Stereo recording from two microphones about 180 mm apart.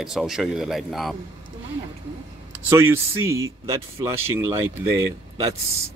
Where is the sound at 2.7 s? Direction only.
15° right (ahead or behind).